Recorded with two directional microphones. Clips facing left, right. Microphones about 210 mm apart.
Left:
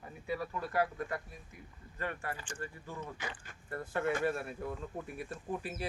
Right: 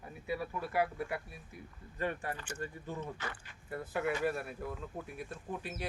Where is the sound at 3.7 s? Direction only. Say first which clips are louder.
Left 1 dB; 5° right (ahead or behind).